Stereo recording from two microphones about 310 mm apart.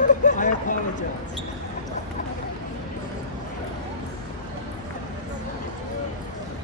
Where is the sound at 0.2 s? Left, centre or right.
Left.